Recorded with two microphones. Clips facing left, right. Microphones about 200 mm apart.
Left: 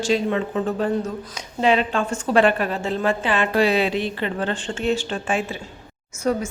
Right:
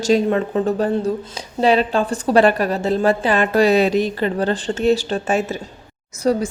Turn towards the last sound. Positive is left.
turn(degrees=-30)  # may be behind; listen again after turning